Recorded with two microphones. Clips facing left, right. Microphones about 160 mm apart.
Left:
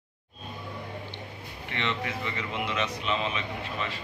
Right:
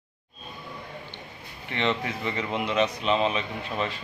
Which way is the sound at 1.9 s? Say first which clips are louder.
Right 3 dB; 40° right (ahead or behind).